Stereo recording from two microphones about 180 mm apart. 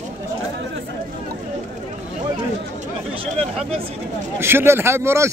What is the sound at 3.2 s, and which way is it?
Speech, 35° right (ahead or behind).